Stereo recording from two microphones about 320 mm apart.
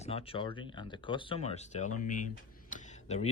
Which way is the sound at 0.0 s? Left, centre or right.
Centre.